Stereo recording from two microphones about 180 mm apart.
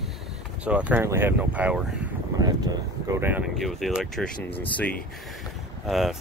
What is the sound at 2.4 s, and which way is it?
Speech, 20° right (ahead or behind).